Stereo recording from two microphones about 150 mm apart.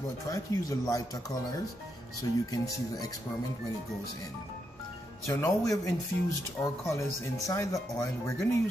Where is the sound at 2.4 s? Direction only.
25° left (ahead or behind).